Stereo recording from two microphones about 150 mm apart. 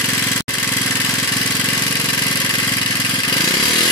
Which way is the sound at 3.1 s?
25° left (ahead or behind).